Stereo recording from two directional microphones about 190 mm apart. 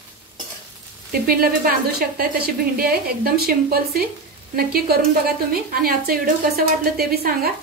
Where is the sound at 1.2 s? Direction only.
50° right (ahead or behind).